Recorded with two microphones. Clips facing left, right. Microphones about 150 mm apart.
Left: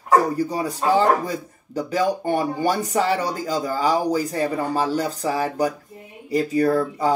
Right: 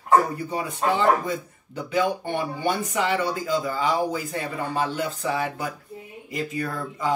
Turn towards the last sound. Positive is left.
turn(degrees=35)  # may be behind; listen again after turning